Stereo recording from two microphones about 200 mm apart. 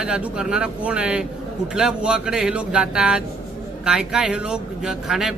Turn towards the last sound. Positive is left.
turn(degrees=0)  # may be behind; listen again after turning